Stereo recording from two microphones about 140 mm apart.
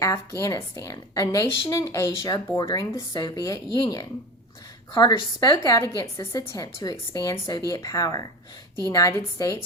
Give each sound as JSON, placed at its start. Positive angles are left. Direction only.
{"t": 0.0, "sound": "a woman's voice", "side_deg": 20}